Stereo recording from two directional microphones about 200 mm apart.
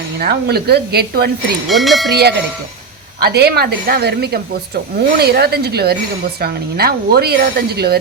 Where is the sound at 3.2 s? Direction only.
55° right (ahead or behind).